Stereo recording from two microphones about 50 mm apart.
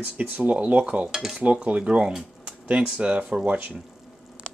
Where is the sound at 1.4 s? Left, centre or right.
Right.